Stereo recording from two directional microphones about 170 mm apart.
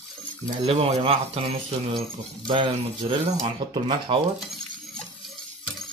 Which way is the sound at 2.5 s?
30° right (ahead or behind).